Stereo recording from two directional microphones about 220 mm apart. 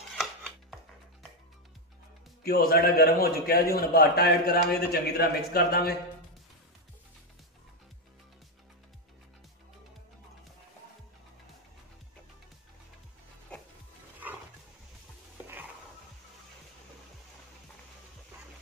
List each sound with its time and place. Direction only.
2.4 s a man's voice: 45° left (ahead or behind)
14.2 s roaring cats: 10° right (ahead or behind)